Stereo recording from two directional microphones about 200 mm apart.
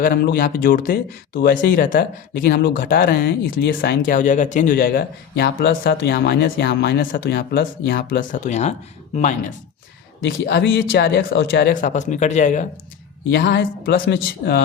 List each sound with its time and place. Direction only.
0.0 s speech: 45° left (ahead or behind)
10.2 s speech: 55° left (ahead or behind)
11.7 s speech: 40° left (ahead or behind)
13.3 s speech: 55° left (ahead or behind)